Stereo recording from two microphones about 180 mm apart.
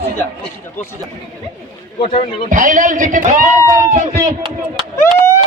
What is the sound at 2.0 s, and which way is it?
Speech, 30° left (ahead or behind).